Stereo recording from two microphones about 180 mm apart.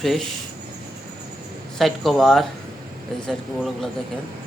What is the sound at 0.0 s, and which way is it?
Speech, centre (ahead or behind).